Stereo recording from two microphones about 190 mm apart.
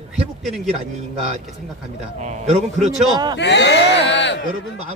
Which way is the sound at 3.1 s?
20° right (ahead or behind).